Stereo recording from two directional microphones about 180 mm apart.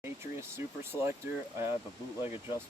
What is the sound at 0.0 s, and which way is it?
Speech, 15° right (ahead or behind).